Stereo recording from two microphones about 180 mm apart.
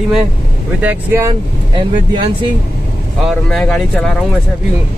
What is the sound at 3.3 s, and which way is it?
Speech, centre (ahead or behind).